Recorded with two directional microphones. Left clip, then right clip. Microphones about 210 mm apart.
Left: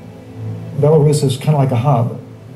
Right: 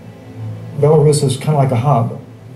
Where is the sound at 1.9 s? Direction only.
25° right (ahead or behind).